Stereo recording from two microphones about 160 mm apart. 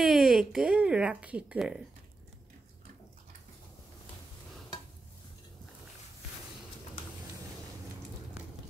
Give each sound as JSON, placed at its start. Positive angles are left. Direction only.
{"t": 0.0, "sound": "speech", "side_deg": 0}